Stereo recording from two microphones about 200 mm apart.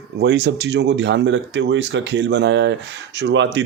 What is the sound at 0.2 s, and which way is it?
Speech, 60° right (ahead or behind).